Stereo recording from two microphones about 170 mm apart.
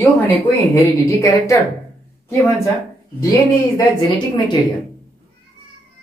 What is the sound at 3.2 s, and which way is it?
Speech, 20° left (ahead or behind).